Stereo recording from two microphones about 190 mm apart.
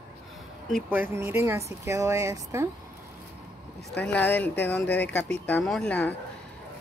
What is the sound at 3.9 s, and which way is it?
Speech, 5° left (ahead or behind).